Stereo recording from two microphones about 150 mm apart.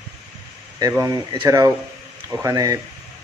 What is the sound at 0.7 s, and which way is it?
Speech, 25° right (ahead or behind).